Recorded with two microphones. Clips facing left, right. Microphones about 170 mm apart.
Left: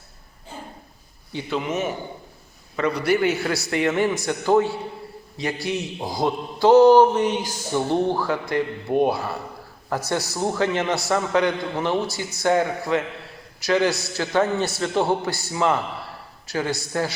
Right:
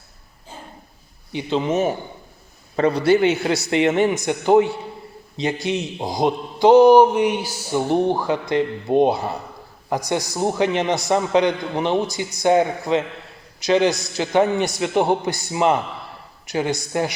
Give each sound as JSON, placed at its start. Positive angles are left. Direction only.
{"t": 1.3, "sound": "a man's voice", "side_deg": -20}